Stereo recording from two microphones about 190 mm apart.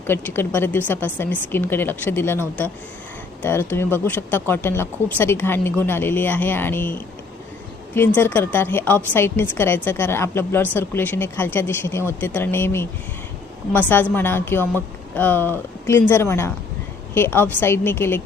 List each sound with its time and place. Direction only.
0.1 s speech: 10° left (ahead or behind)